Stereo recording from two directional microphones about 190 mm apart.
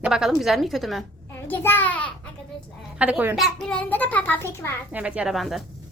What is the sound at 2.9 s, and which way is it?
Speech, 5° right (ahead or behind).